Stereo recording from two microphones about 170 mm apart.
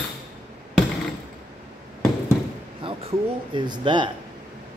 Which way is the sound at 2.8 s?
30° right (ahead or behind).